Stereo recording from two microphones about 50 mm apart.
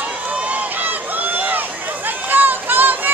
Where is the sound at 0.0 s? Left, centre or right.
Right.